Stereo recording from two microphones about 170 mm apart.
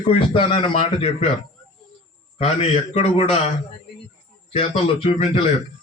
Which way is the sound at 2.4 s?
35° left (ahead or behind).